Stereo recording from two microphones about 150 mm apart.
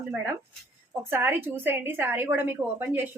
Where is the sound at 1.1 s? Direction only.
15° right (ahead or behind).